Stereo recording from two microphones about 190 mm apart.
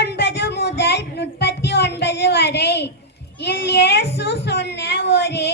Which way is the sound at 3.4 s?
60° left (ahead or behind).